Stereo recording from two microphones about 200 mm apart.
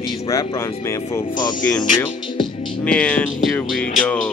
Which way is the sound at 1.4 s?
20° left (ahead or behind).